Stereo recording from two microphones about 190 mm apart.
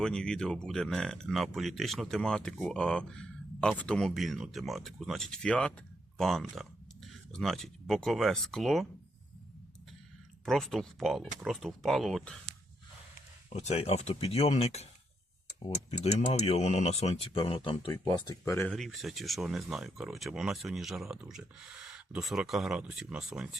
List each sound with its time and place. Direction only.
0.0 s speech: 5° left (ahead or behind)
10.4 s speech: centre (ahead or behind)
13.6 s speech: 35° left (ahead or behind); by 18.7 s 15° left (ahead or behind)
18.7 s speech: centre (ahead or behind)